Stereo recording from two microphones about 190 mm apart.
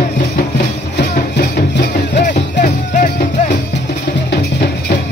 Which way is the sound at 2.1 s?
40° left (ahead or behind).